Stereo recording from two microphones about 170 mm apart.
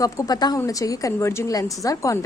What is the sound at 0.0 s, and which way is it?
Speech, 20° left (ahead or behind).